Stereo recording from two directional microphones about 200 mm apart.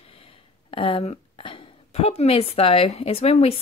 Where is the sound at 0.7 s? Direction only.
25° left (ahead or behind).